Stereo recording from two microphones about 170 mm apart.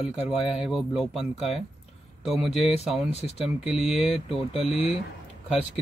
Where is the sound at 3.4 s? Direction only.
Centre (ahead or behind).